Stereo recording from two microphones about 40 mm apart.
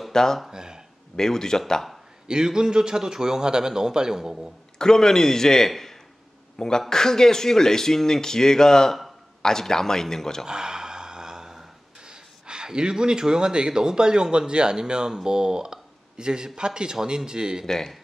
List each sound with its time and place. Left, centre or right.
0.1 s speech: centre
0.5 s a sound: centre
1.1 s speech: centre
2.2 s a man's voice: centre
4.7 s speech: centre
10.4 s gasp: centre
17.6 s speech: centre